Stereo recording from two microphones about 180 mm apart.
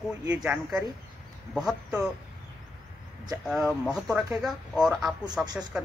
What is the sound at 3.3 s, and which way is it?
Speech, 5° right (ahead or behind).